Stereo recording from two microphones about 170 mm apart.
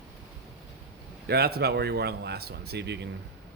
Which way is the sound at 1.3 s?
65° right (ahead or behind).